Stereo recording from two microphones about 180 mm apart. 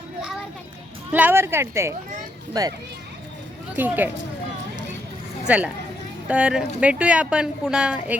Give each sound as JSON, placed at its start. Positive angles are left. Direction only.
{"t": 0.2, "sound": "children playing", "side_deg": -5}
{"t": 1.1, "sound": "a woman's voice", "side_deg": -10}
{"t": 3.8, "sound": "a woman's voice", "side_deg": -10}
{"t": 5.5, "sound": "a woman's voice", "side_deg": -5}